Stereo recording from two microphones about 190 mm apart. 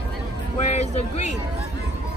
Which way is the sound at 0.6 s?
35° left (ahead or behind).